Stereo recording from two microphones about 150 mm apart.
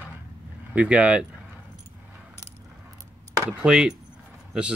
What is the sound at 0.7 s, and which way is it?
Speech, 10° right (ahead or behind).